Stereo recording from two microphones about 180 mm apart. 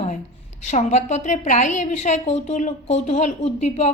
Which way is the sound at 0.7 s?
40° left (ahead or behind).